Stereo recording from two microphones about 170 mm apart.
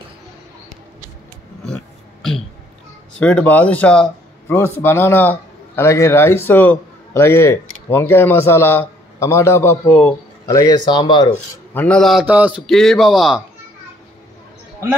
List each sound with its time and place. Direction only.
3.2 s a man's voice: 5° left (ahead or behind); by 11.3 s 25° left (ahead or behind)
11.7 s a man's voice: 10° left (ahead or behind); by 12.6 s 10° right (ahead or behind)
12.6 s a man's voice: centre (ahead or behind)